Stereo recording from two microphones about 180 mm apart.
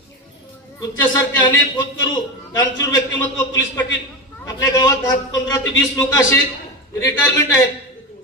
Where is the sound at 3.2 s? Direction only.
15° left (ahead or behind).